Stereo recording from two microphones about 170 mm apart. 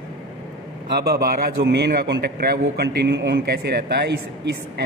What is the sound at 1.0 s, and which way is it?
A man's voice, 65° right (ahead or behind).